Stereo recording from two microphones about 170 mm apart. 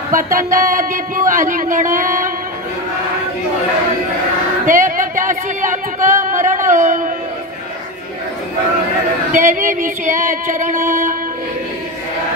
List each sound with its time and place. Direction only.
0.1 s music: 55° right (ahead or behind)
4.6 s a sound: 50° right (ahead or behind)
9.3 s music: 50° right (ahead or behind)